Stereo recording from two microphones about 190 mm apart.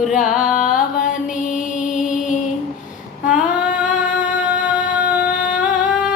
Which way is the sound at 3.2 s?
5° right (ahead or behind).